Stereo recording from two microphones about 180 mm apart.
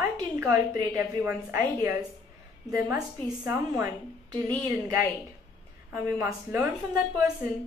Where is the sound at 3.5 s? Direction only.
15° right (ahead or behind).